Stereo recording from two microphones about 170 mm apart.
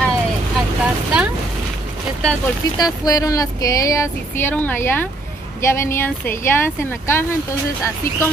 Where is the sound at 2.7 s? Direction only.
20° left (ahead or behind).